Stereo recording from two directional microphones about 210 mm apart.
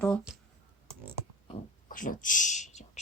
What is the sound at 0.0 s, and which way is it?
Speech, 5° left (ahead or behind).